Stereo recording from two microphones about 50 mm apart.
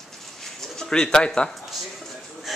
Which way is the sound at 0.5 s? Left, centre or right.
Centre.